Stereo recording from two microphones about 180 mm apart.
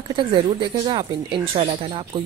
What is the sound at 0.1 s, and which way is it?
Speech, 25° right (ahead or behind).